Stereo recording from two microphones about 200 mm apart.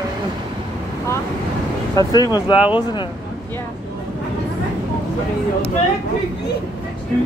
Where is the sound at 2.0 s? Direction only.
20° left (ahead or behind).